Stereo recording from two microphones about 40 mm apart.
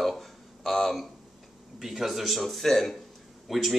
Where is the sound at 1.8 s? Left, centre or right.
Centre.